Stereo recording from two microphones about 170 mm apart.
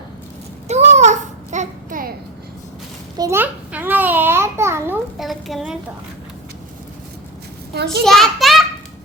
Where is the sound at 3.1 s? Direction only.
15° right (ahead or behind).